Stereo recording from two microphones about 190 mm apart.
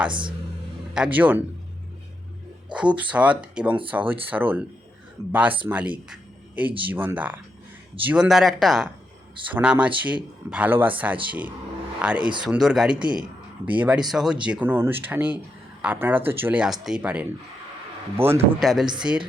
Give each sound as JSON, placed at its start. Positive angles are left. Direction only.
{"t": 0.1, "sound": "speech", "side_deg": -25}
{"t": 0.9, "sound": "speech", "side_deg": -5}
{"t": 2.7, "sound": "a man's voice", "side_deg": -5}
{"t": 18.6, "sound": "a man's voice", "side_deg": 0}